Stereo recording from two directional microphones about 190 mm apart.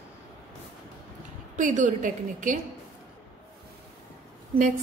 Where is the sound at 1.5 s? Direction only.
40° right (ahead or behind).